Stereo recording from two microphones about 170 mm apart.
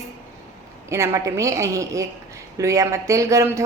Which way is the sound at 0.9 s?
15° right (ahead or behind).